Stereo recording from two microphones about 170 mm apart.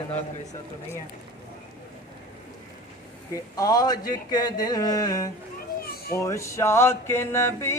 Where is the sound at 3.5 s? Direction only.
20° left (ahead or behind).